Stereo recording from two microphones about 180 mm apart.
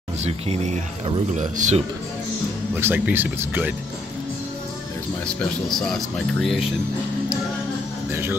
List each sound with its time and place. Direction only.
0.2 s speech: 35° right (ahead or behind)
2.8 s speech: 10° right (ahead or behind)
5.2 s speech: centre (ahead or behind)
8.1 s speech: 10° right (ahead or behind)